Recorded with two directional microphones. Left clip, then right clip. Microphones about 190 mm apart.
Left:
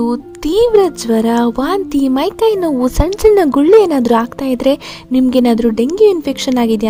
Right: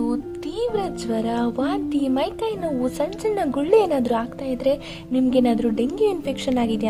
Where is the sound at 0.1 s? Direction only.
45° left (ahead or behind).